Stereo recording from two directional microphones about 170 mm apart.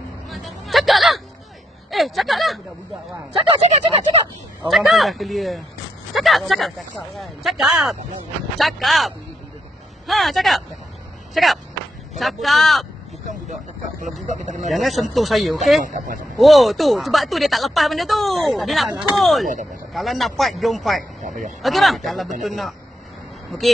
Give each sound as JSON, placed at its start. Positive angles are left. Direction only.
{"t": 0.3, "sound": "a sound", "side_deg": 0}
{"t": 3.3, "sound": "speech", "side_deg": -35}
{"t": 4.6, "sound": "speech", "side_deg": 0}
{"t": 14.2, "sound": "speech", "side_deg": -45}
{"t": 14.7, "sound": "speech", "side_deg": 0}
{"t": 15.8, "sound": "speech", "side_deg": -50}
{"t": 16.3, "sound": "speech", "side_deg": 0}
{"t": 21.2, "sound": "speech", "side_deg": -45}
{"t": 21.6, "sound": "speech", "side_deg": 0}